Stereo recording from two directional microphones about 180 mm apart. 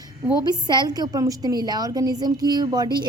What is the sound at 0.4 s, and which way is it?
A woman's voice, 25° right (ahead or behind).